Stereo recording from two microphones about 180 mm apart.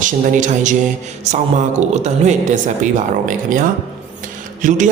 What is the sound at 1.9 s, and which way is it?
Speech, 40° right (ahead or behind).